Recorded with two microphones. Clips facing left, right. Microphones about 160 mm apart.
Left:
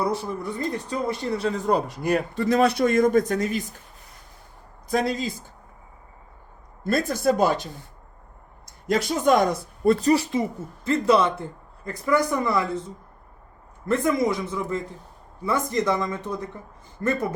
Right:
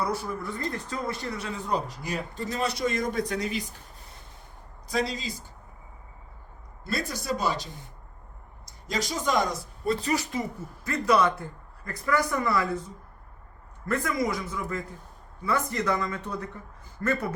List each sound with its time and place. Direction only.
0.0 s speech: 25° left (ahead or behind)
1.4 s a man's voice: 40° left (ahead or behind)
4.9 s a man's voice: 50° left (ahead or behind)
6.8 s a man's voice: 50° left (ahead or behind)
10.0 s speech: 35° left (ahead or behind)
13.8 s speech: 25° left (ahead or behind)